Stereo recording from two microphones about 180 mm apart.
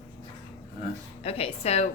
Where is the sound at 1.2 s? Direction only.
35° left (ahead or behind).